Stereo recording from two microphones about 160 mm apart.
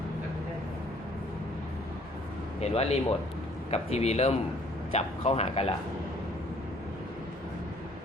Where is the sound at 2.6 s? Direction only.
40° left (ahead or behind).